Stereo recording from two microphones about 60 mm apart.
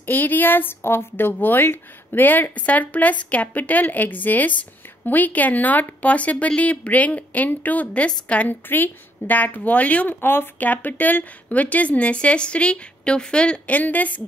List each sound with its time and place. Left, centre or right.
0.0 s a woman's voice: left